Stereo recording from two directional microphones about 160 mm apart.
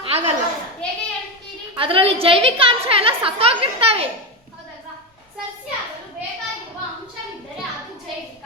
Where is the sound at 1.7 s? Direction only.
35° right (ahead or behind).